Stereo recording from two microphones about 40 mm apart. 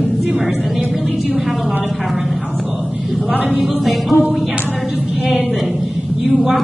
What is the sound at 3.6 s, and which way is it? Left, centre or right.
Speech, centre.